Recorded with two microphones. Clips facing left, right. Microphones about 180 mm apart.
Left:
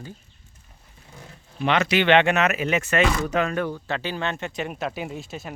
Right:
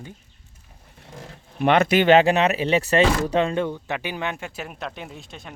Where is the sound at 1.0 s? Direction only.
90° right.